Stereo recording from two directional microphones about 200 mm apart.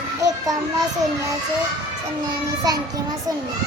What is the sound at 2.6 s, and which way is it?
Child singing, 20° right (ahead or behind).